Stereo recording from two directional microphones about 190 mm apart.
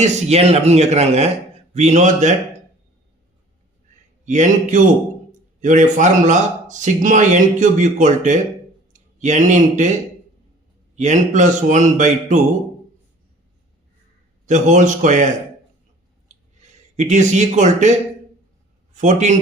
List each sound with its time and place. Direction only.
0.0 s speech: 35° right (ahead or behind)
4.3 s speech: 40° right (ahead or behind)
10.9 s speech: 40° right (ahead or behind)
14.4 s speech: 40° right (ahead or behind)
16.3 s a sound: 40° right (ahead or behind)
18.9 s speech: 40° right (ahead or behind)